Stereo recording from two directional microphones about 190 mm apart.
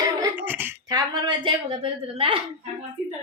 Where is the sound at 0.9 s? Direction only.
20° right (ahead or behind).